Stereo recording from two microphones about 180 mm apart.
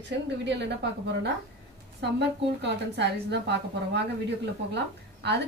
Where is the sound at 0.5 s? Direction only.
75° right (ahead or behind).